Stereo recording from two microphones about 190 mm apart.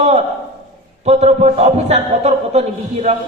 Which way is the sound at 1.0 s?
35° right (ahead or behind).